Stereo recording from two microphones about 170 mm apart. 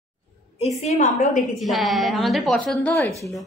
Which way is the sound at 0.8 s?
45° left (ahead or behind).